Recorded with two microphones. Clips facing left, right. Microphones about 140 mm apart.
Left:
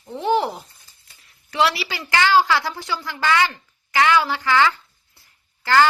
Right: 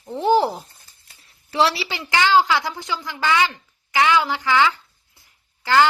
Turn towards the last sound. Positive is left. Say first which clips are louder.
# even
turn(degrees=-15)  # may be behind; listen again after turning